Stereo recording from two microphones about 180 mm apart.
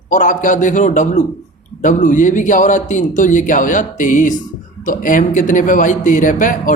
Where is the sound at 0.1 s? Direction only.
45° left (ahead or behind).